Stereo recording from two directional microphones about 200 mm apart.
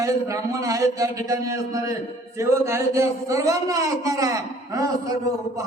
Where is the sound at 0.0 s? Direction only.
15° right (ahead or behind).